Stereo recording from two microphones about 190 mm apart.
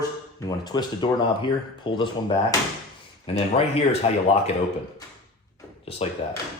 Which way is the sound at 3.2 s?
30° left (ahead or behind).